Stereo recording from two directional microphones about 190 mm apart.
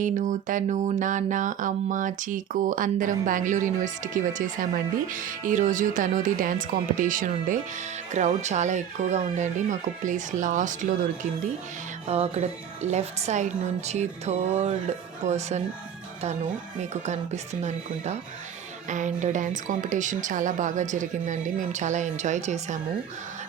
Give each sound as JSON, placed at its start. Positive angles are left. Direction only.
{"t": 0.0, "sound": "a sound", "side_deg": -45}
{"t": 8.1, "sound": "a woman's voice", "side_deg": -40}
{"t": 16.9, "sound": "a woman's voice", "side_deg": -35}